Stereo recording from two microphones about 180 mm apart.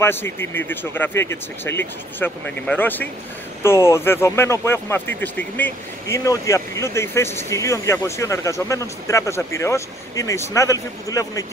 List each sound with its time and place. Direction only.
0.0 s speech: 10° left (ahead or behind)